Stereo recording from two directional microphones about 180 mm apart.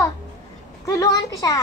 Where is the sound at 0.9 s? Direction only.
20° left (ahead or behind).